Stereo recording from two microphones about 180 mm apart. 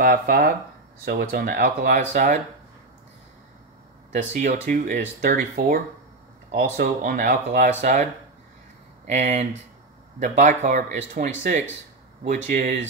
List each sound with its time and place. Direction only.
0.0 s speech: 55° right (ahead or behind)
4.1 s speech: 40° right (ahead or behind)
12.4 s speech: 45° right (ahead or behind)